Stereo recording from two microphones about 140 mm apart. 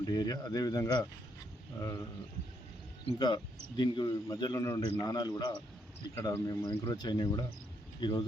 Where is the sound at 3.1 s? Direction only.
30° left (ahead or behind).